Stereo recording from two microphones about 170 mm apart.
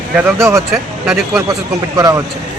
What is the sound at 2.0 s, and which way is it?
Speech, 20° right (ahead or behind).